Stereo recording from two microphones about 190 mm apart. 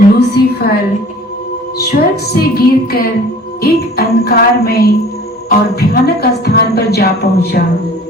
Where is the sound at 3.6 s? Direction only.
55° left (ahead or behind).